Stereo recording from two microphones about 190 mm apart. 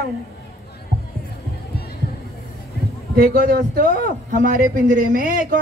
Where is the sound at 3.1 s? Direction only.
50° right (ahead or behind).